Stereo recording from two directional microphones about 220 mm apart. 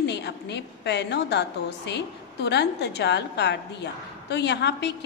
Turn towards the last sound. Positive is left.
turn(degrees=50)  # may be behind; listen again after turning